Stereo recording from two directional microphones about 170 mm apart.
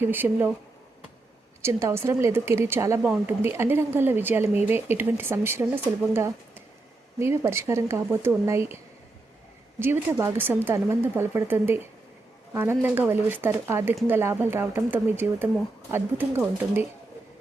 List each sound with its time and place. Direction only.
0.0 s speech: 10° right (ahead or behind)
1.6 s speech: 15° right (ahead or behind)
3.0 s a woman's voice: centre (ahead or behind)
3.4 s speech: 15° right (ahead or behind)
9.8 s speech: 10° right (ahead or behind)